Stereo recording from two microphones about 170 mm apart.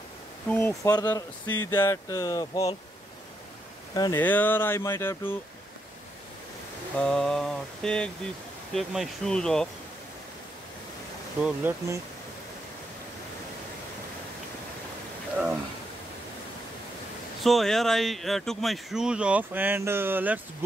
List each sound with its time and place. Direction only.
0.5 s speech: 15° left (ahead or behind)
3.9 s speech: 20° left (ahead or behind)
4.2 s speech: 10° left (ahead or behind)
7.0 s speech: 5° left (ahead or behind)
11.4 s speech: 10° right (ahead or behind)
17.4 s speech: centre (ahead or behind)